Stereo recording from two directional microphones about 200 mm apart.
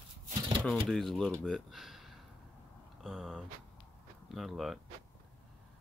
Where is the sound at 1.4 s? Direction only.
Centre (ahead or behind).